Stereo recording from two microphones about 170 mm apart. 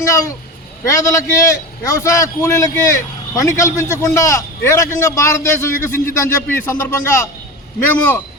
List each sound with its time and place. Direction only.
0.0 s a man's voice: 20° left (ahead or behind)